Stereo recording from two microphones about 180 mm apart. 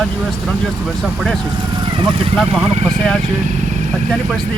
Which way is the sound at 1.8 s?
30° right (ahead or behind).